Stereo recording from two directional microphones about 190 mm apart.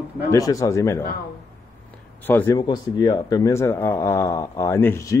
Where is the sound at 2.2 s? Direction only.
10° left (ahead or behind).